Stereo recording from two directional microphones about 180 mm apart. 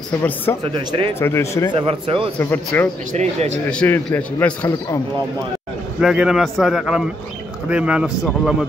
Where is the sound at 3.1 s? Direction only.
40° right (ahead or behind).